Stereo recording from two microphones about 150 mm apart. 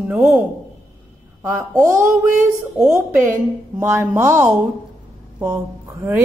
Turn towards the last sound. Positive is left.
turn(degrees=-15)  # may be behind; listen again after turning